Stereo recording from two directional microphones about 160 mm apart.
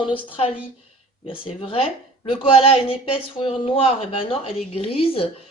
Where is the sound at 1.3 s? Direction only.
35° left (ahead or behind).